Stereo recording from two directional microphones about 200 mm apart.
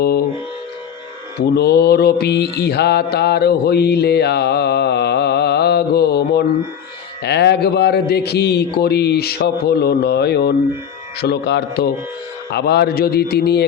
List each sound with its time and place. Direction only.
1.5 s mantra: 55° left (ahead or behind)
11.2 s speech: 55° left (ahead or behind)
12.5 s mantra: 55° left (ahead or behind)